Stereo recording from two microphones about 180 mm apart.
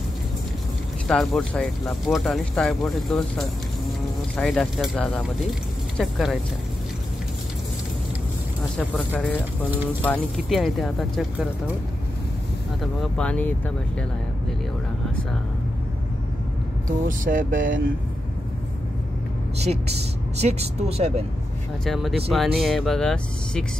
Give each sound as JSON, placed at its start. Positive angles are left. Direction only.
{"t": 1.0, "sound": "speech", "side_deg": 0}
{"t": 8.7, "sound": "speech", "side_deg": 5}
{"t": 12.8, "sound": "speech", "side_deg": 5}
{"t": 16.8, "sound": "speech", "side_deg": -50}
{"t": 20.3, "sound": "a woman's voice", "side_deg": -35}
{"t": 21.8, "sound": "speech", "side_deg": 0}